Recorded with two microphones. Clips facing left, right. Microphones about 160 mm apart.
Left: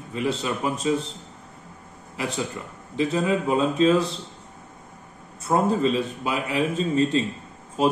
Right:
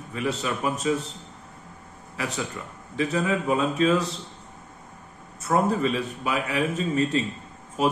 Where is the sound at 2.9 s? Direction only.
25° left (ahead or behind).